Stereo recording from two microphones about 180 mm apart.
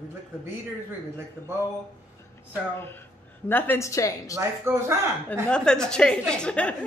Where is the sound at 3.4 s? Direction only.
10° left (ahead or behind).